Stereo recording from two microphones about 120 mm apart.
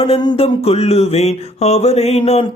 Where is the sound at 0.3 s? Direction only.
55° left (ahead or behind).